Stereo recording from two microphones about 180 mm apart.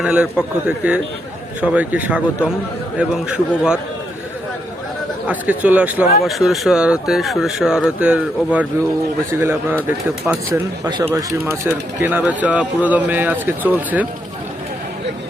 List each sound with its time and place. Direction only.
0.0 s speech: 5° right (ahead or behind)
1.6 s speech: 5° right (ahead or behind)
5.2 s speech: 10° right (ahead or behind)